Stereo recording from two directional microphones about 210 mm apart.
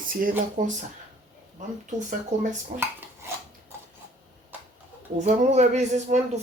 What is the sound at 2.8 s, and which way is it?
Dishes, 10° right (ahead or behind).